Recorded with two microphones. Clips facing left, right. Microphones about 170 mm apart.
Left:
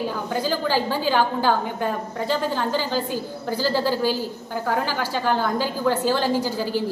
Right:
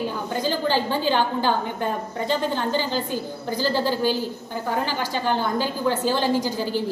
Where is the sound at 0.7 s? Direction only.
10° left (ahead or behind).